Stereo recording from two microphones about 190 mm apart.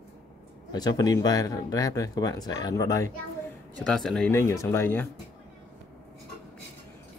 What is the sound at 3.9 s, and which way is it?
Speech, 5° left (ahead or behind).